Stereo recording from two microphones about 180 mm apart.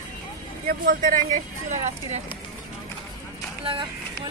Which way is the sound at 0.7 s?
50° right (ahead or behind).